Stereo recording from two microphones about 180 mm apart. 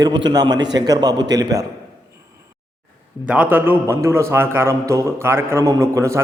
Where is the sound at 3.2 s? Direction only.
10° right (ahead or behind).